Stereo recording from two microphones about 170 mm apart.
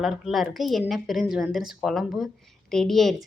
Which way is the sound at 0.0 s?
Centre (ahead or behind).